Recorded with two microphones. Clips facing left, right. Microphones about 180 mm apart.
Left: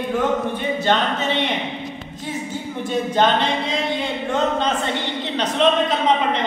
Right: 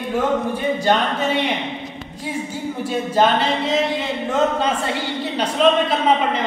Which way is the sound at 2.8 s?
5° right (ahead or behind).